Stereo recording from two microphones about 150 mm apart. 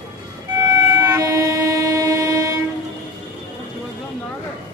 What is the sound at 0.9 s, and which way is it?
Train, 20° right (ahead or behind).